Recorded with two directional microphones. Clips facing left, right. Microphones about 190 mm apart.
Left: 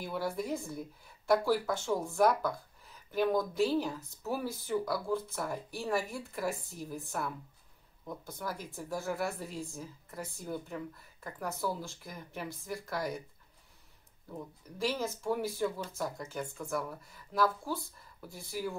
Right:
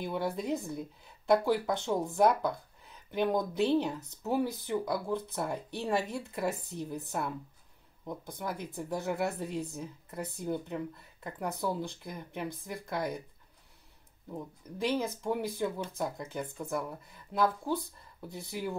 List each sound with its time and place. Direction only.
0.0 s speech: 20° right (ahead or behind)
14.3 s speech: 20° right (ahead or behind)